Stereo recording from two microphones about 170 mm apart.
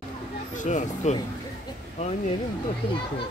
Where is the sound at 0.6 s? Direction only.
45° left (ahead or behind).